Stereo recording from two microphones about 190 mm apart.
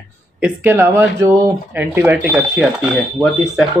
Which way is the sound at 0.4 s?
10° right (ahead or behind).